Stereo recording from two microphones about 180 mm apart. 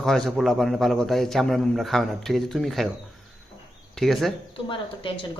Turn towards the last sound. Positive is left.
turn(degrees=30)  # may be behind; listen again after turning